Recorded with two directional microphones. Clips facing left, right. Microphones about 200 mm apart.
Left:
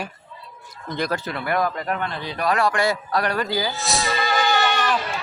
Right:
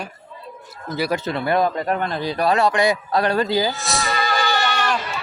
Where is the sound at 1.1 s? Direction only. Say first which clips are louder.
Right 6 dB; 25° right (ahead or behind).